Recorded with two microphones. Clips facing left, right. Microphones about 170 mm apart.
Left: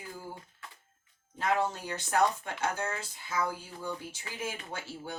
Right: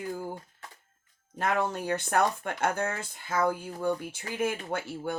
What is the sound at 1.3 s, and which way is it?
Speech, 55° right (ahead or behind).